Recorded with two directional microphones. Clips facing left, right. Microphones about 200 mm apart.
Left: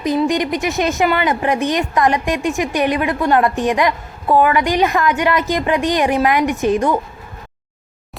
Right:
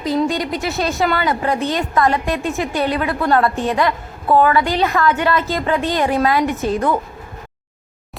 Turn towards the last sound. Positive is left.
turn(degrees=15)  # may be behind; listen again after turning